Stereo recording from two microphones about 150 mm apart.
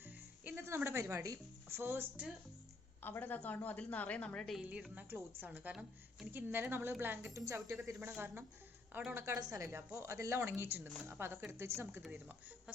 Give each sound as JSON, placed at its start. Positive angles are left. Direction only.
{"t": 0.0, "sound": "speech", "side_deg": -15}
{"t": 3.0, "sound": "a woman's voice", "side_deg": 10}
{"t": 4.6, "sound": "a woman's voice", "side_deg": -10}